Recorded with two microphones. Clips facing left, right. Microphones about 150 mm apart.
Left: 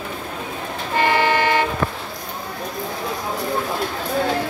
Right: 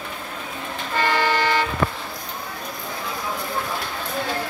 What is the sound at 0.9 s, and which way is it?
Vehicle, 15° left (ahead or behind).